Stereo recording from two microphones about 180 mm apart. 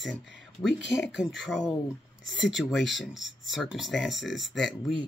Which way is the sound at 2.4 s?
Centre (ahead or behind).